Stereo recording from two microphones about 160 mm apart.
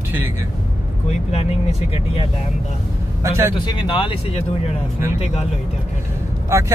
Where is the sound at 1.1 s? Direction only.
40° left (ahead or behind).